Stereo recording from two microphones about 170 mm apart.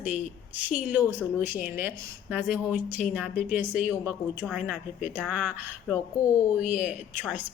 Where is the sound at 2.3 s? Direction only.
10° right (ahead or behind).